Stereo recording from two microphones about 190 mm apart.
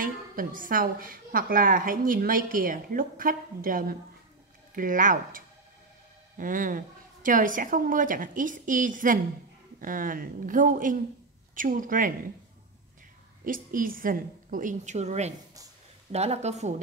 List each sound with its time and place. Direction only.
0.0 s a woman's voice: 45° right (ahead or behind)
13.4 s a woman's voice: 50° right (ahead or behind)